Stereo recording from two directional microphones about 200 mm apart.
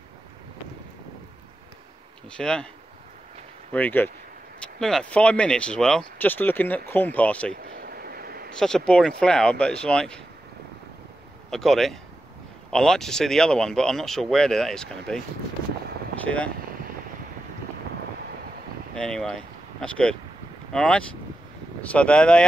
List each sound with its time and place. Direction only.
2.3 s speech: 5° left (ahead or behind)
3.7 s speech: 10° left (ahead or behind)
7.6 s vehicle: 50° right (ahead or behind)
8.5 s speech: 5° left (ahead or behind)
11.5 s speech: centre (ahead or behind)
16.3 s speech: 5° left (ahead or behind)
18.9 s speech: 5° left (ahead or behind)